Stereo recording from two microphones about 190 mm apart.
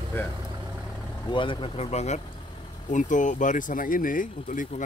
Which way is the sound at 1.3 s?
25° left (ahead or behind).